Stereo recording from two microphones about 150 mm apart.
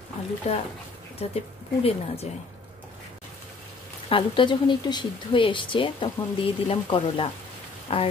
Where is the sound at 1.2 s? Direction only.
45° left (ahead or behind).